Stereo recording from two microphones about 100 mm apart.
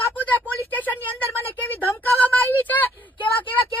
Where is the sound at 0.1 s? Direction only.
15° left (ahead or behind).